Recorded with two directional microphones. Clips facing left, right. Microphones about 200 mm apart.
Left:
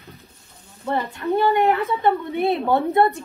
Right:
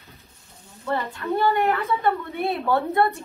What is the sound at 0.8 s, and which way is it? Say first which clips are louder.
A woman's voice: left 3 dB; 20° left (ahead or behind).